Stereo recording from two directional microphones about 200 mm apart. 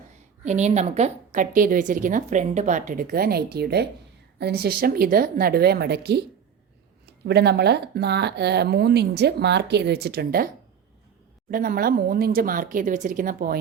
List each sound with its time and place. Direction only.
0.4 s a woman's voice: 35° right (ahead or behind); by 6.2 s 55° right (ahead or behind)
7.3 s speech: 55° right (ahead or behind)
11.5 s speech: 45° right (ahead or behind)